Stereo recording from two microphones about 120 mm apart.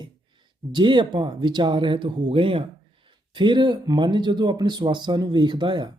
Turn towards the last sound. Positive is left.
turn(degrees=-40)  # may be behind; listen again after turning